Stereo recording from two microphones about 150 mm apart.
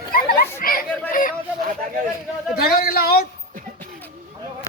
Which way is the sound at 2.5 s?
90° left.